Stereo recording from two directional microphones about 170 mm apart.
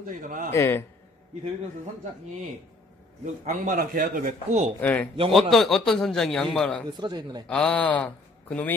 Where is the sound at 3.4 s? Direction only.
50° right (ahead or behind).